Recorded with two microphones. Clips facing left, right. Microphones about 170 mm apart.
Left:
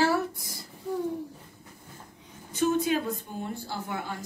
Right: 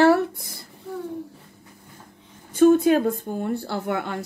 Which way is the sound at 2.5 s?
50° right (ahead or behind).